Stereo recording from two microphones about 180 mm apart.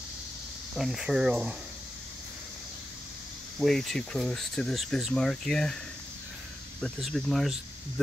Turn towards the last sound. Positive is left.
turn(degrees=0)  # may be behind; listen again after turning